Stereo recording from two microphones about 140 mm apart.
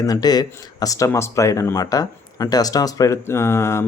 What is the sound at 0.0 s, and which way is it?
Speech, 30° left (ahead or behind).